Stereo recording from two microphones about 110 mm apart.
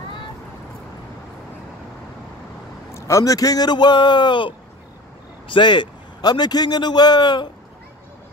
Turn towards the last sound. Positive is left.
turn(degrees=40)  # may be behind; listen again after turning